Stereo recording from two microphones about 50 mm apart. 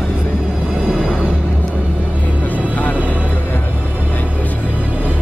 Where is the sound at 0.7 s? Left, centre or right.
Centre.